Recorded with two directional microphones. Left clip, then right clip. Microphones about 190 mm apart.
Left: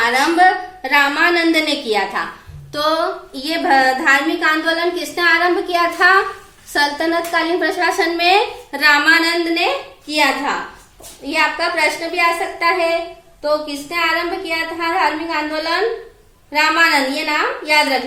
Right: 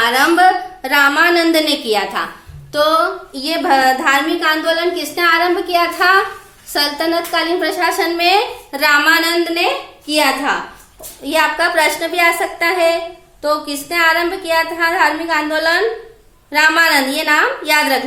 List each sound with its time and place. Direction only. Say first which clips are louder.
0.0 s a woman's voice: right 2 dB; 25° right (ahead or behind)